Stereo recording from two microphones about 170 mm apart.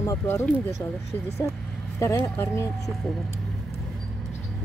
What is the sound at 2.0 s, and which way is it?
Speech, 15° left (ahead or behind).